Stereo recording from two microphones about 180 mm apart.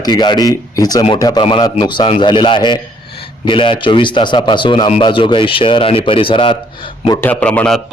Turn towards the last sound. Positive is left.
turn(degrees=5)  # may be behind; listen again after turning